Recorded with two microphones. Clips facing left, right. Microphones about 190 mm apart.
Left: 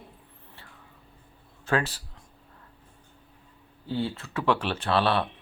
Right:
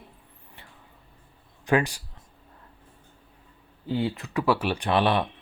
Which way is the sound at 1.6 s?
15° right (ahead or behind).